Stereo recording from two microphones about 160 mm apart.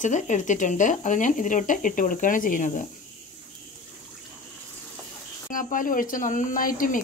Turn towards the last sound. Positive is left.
turn(degrees=60)  # may be behind; listen again after turning